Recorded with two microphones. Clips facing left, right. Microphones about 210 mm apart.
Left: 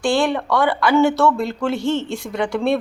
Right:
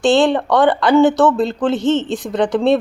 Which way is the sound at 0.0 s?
20° right (ahead or behind).